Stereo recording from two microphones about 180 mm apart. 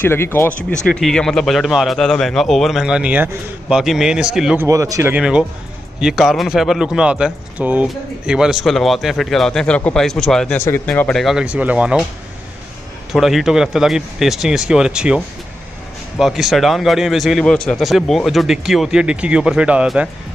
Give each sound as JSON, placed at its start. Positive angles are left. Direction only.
{"t": 0.0, "sound": "speech", "side_deg": 10}
{"t": 4.6, "sound": "speech", "side_deg": -20}
{"t": 5.1, "sound": "speech", "side_deg": -5}
{"t": 13.1, "sound": "speech", "side_deg": 0}